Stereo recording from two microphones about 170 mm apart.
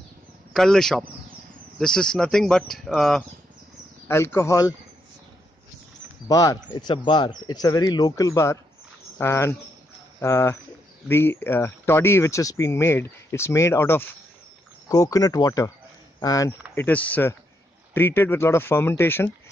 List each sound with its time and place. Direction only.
0.5 s a man's voice: centre (ahead or behind)
4.1 s speech: 15° left (ahead or behind)
6.2 s speech: 20° left (ahead or behind)
16.7 s speech: 10° left (ahead or behind)